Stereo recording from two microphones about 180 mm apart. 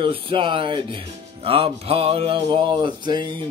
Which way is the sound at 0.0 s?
30° right (ahead or behind).